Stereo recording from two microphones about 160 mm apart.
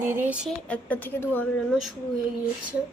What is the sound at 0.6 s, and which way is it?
A woman's voice, 10° left (ahead or behind).